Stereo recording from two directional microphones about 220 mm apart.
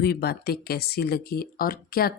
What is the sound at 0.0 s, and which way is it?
Speech, 45° left (ahead or behind).